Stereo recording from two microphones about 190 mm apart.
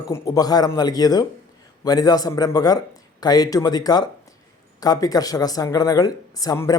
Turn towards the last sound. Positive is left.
turn(degrees=20)  # may be behind; listen again after turning